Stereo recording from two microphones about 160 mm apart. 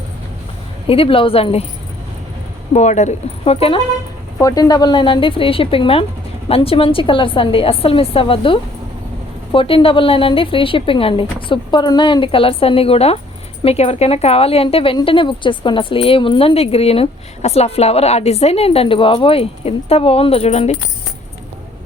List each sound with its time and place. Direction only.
0.9 s a woman's voice: 35° left (ahead or behind)
2.7 s speech: 45° left (ahead or behind)
4.4 s a woman's voice: 20° left (ahead or behind); by 20.7 s 40° left (ahead or behind)